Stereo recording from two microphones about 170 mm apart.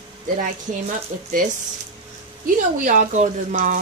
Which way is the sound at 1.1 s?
55° right (ahead or behind).